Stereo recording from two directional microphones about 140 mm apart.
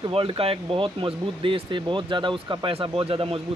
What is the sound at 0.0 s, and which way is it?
Speech, 35° right (ahead or behind).